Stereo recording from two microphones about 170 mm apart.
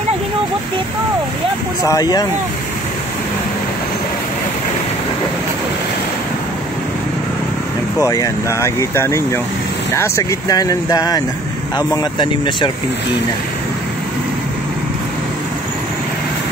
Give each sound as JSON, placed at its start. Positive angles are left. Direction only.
{"t": 1.9, "sound": "speech", "side_deg": 20}
{"t": 8.0, "sound": "speech", "side_deg": 20}